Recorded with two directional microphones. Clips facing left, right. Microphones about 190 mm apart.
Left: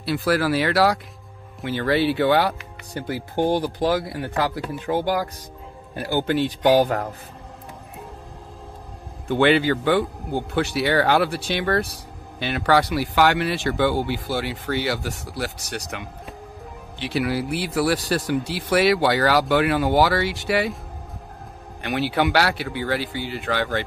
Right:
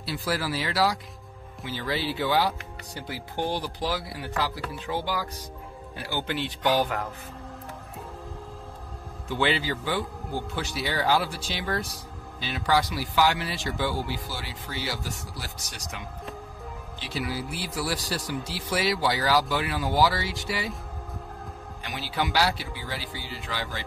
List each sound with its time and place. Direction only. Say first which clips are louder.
0.0 s speech: left 8 dB; 60° left (ahead or behind); by 7.1 s 40° left (ahead or behind)
9.3 s speech: left 9 dB; 60° left (ahead or behind)
21.8 s speech: left 9 dB; 65° left (ahead or behind)